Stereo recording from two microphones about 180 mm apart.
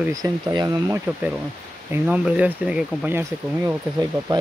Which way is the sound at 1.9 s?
10° right (ahead or behind).